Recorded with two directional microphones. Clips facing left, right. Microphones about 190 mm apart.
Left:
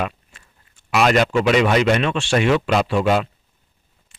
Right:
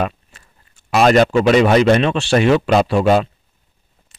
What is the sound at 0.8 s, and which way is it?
Speech, 40° right (ahead or behind).